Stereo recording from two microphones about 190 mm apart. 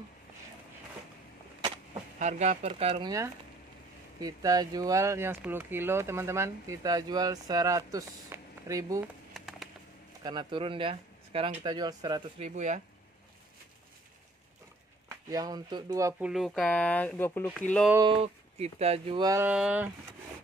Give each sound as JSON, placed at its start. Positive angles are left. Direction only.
{"t": 2.1, "sound": "speech", "side_deg": -40}
{"t": 4.2, "sound": "speech", "side_deg": -20}
{"t": 9.0, "sound": "a sound", "side_deg": 0}
{"t": 10.2, "sound": "speech", "side_deg": -25}
{"t": 12.4, "sound": "speech", "side_deg": -40}
{"t": 15.2, "sound": "speech", "side_deg": -20}
{"t": 16.3, "sound": "speech", "side_deg": 0}
{"t": 18.0, "sound": "speech", "side_deg": -30}
{"t": 19.2, "sound": "speech", "side_deg": -15}